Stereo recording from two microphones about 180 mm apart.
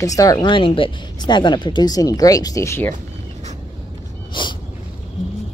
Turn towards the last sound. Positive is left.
turn(degrees=25)  # may be behind; listen again after turning